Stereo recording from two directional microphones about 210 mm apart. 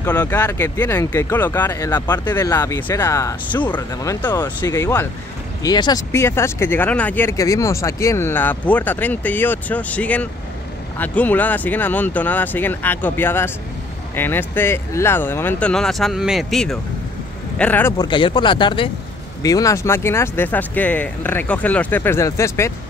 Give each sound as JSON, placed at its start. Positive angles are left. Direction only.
{"t": 0.0, "sound": "speech", "side_deg": 10}